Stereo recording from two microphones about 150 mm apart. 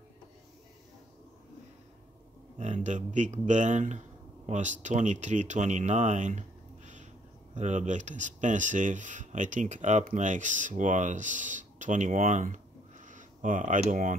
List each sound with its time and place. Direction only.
2.6 s speech: 55° right (ahead or behind)